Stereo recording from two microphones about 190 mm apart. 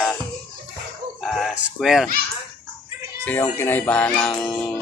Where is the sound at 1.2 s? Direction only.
Centre (ahead or behind).